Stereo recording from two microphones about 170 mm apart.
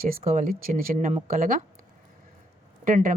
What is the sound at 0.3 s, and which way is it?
Speech, 55° right (ahead or behind).